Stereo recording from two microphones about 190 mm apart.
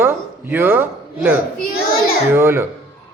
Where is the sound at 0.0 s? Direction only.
10° right (ahead or behind).